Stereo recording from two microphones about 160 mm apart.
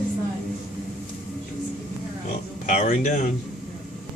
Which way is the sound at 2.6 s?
50° left (ahead or behind).